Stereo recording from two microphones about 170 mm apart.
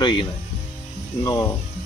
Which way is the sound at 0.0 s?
30° left (ahead or behind).